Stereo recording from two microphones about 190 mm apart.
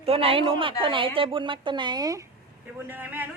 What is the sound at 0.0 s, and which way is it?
A woman's voice, 30° right (ahead or behind).